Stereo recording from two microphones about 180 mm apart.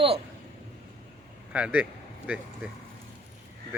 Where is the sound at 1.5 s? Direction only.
5° right (ahead or behind).